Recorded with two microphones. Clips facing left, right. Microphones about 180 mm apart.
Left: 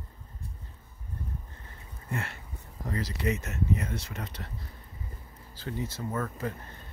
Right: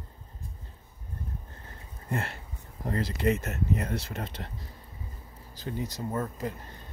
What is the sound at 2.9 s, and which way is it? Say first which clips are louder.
Speech: right 4 dB; 55° right (ahead or behind).